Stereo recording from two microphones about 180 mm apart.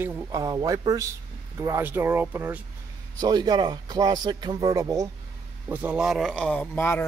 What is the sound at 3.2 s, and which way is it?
Speech, 25° right (ahead or behind).